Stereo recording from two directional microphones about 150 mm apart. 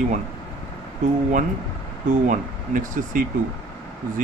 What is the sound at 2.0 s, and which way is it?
Speech, 60° right (ahead or behind).